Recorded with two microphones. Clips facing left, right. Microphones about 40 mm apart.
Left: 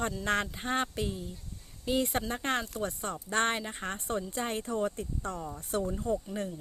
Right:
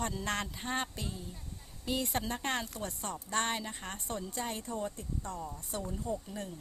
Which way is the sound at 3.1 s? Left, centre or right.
Left.